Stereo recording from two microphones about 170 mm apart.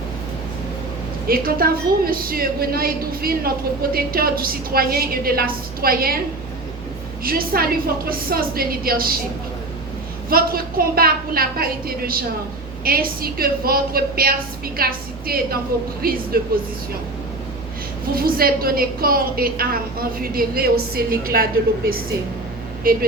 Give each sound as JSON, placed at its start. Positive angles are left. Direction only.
{"t": 1.3, "sound": "a woman's voice", "side_deg": -60}
{"t": 7.3, "sound": "a woman's voice", "side_deg": -60}
{"t": 10.2, "sound": "a woman's voice", "side_deg": -60}
{"t": 18.1, "sound": "a woman's voice", "side_deg": -60}